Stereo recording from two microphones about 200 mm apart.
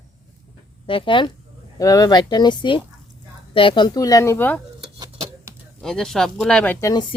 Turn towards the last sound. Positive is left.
turn(degrees=20)  # may be behind; listen again after turning